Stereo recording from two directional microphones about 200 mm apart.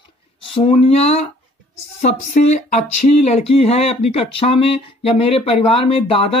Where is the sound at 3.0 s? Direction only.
35° left (ahead or behind).